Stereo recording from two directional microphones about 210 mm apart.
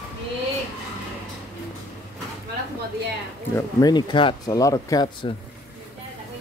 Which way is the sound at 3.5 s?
15° left (ahead or behind).